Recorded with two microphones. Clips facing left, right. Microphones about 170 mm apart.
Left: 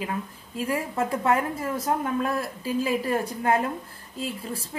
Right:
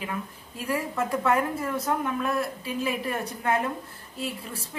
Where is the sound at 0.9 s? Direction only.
30° left (ahead or behind).